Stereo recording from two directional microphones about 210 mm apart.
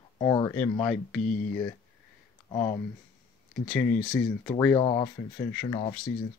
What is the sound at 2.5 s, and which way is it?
Speech, 20° left (ahead or behind).